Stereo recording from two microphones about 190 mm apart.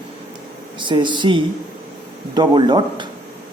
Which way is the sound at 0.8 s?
25° right (ahead or behind).